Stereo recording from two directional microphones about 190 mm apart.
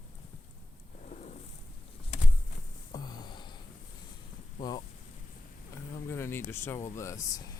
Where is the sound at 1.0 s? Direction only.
40° left (ahead or behind).